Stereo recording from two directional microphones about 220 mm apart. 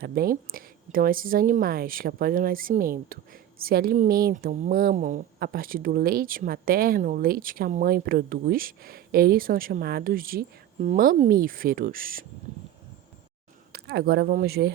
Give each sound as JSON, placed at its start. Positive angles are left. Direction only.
{"t": 0.0, "sound": "speech", "side_deg": -45}
{"t": 13.7, "sound": "speech", "side_deg": -45}